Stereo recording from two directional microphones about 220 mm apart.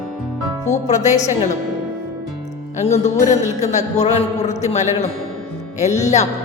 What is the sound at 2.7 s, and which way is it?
Speech, 30° left (ahead or behind).